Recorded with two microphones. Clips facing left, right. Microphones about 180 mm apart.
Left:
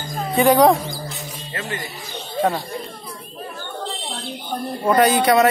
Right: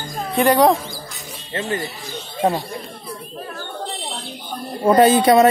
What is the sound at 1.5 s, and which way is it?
Speech, 30° right (ahead or behind).